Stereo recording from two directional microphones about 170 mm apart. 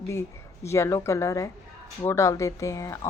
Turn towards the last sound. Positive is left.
turn(degrees=15)  # may be behind; listen again after turning